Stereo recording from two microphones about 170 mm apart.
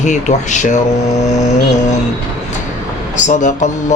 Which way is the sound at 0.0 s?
45° left (ahead or behind).